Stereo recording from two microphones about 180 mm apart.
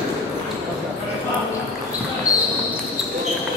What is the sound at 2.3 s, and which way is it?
Basketball bounce, 20° left (ahead or behind).